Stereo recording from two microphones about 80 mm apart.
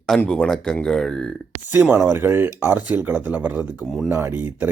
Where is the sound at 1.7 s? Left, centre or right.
Right.